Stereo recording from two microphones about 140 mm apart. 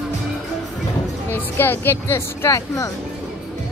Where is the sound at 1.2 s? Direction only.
15° left (ahead or behind).